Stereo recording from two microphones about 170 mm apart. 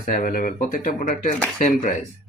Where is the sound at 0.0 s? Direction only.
55° left (ahead or behind).